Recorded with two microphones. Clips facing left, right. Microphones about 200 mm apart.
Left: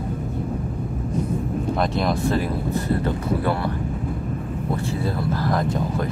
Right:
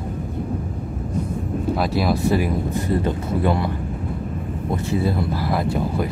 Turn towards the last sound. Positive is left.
turn(degrees=-10)  # may be behind; listen again after turning